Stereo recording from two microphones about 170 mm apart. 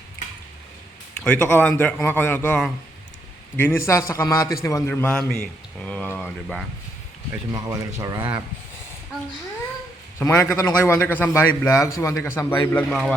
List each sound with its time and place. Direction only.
1.1 s a man's voice: 5° left (ahead or behind)
7.5 s speech: 20° right (ahead or behind)
10.2 s a man's voice: 15° left (ahead or behind)
12.9 s a man's voice: centre (ahead or behind)